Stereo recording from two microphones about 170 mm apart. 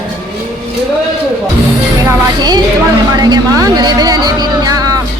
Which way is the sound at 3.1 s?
25° right (ahead or behind).